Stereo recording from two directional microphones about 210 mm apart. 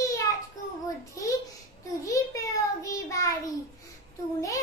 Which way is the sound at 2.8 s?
15° left (ahead or behind).